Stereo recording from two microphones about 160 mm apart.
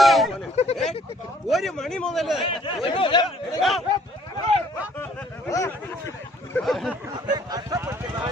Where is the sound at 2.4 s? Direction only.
35° left (ahead or behind).